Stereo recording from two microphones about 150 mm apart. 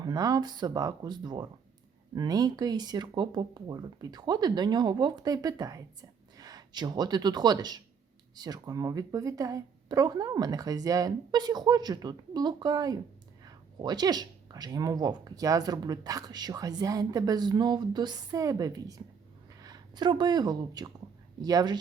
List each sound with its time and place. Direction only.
0.0 s speech: 25° right (ahead or behind)